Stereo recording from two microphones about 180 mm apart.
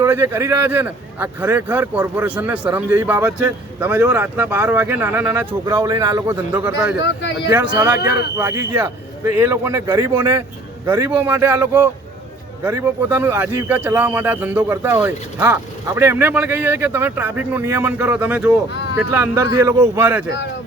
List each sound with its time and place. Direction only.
0.0 s a man's voice: 15° right (ahead or behind)
7.0 s speech: 80° left
7.7 s speech: 20° right (ahead or behind)
7.9 s speech: 55° left (ahead or behind)
8.4 s a man's voice: 10° right (ahead or behind)